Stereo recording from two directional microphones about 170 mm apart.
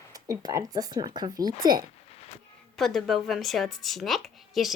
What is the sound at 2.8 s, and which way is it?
A woman's voice, centre (ahead or behind).